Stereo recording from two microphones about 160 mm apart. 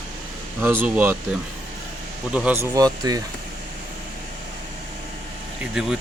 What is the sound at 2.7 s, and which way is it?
Speech, 25° right (ahead or behind).